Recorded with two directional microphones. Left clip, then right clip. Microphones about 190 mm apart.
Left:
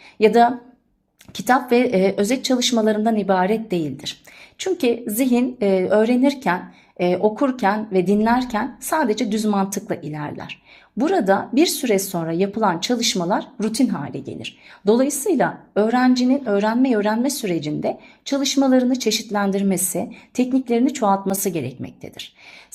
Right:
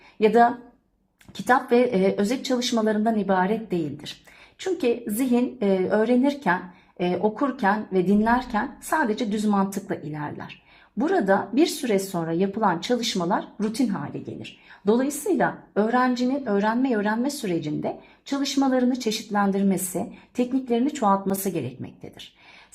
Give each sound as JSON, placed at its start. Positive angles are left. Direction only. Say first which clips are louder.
{"t": 0.2, "sound": "a woman's voice", "louder": "left 4 dB", "side_deg": 30}